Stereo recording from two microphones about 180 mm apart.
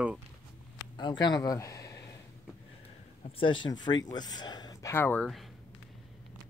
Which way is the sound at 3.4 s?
25° left (ahead or behind).